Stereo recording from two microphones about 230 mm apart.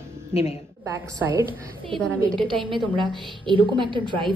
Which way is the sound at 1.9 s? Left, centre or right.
Centre.